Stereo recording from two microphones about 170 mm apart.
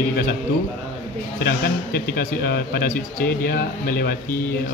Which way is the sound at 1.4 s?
70° left (ahead or behind).